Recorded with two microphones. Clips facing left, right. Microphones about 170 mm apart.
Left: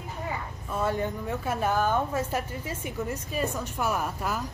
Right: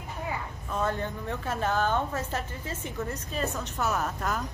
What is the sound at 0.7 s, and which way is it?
A woman's voice, 10° left (ahead or behind).